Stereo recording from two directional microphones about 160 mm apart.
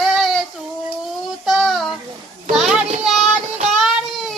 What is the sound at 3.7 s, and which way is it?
Music, centre (ahead or behind).